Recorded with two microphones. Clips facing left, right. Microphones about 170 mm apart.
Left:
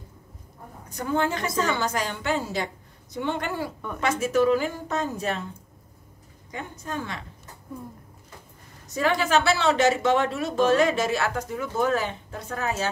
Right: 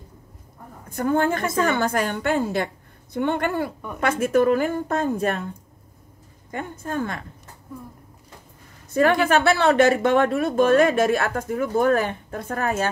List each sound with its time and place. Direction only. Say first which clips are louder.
0.8 s a woman's voice: right 5 dB; 50° right (ahead or behind)
6.5 s speech: right 5 dB; 50° right (ahead or behind)
8.8 s speech: right 6 dB; 55° right (ahead or behind)